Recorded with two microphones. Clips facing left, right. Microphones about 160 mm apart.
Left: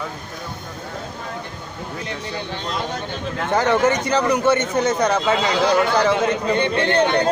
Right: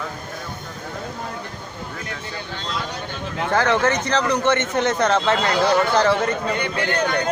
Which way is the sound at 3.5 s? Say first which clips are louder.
Left 2 dB; 15° left (ahead or behind).